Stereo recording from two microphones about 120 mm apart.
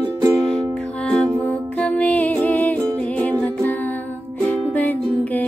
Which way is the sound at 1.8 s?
10° left (ahead or behind).